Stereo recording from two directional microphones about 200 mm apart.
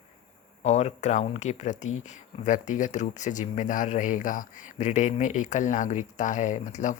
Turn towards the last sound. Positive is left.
turn(degrees=40)  # may be behind; listen again after turning